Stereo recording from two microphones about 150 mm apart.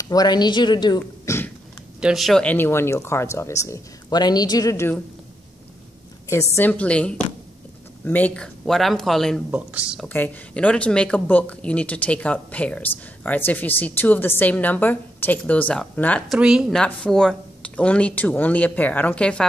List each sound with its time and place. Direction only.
0.0 s speech: 25° left (ahead or behind)
2.0 s speech: 5° right (ahead or behind); by 4.9 s 20° left (ahead or behind)
6.5 s speech: 10° left (ahead or behind); by 10.0 s 5° right (ahead or behind)
10.0 s speech: 10° left (ahead or behind)
16.3 s speech: 5° right (ahead or behind)